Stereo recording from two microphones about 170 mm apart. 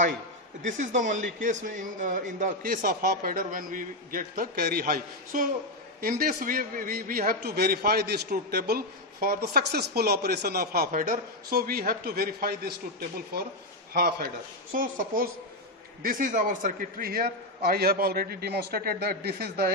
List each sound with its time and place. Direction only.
0.6 s a man's voice: 45° right (ahead or behind)
7.4 s a man's voice: 70° right (ahead or behind)
14.7 s a man's voice: 55° right (ahead or behind)